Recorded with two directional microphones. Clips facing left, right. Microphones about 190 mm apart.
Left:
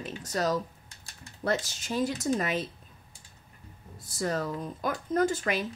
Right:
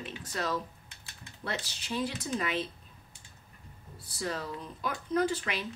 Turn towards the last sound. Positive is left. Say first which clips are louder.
# left 3 dB
turn(degrees=45)  # may be behind; listen again after turning